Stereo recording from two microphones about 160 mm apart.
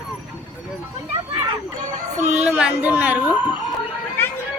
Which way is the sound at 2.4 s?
5° right (ahead or behind).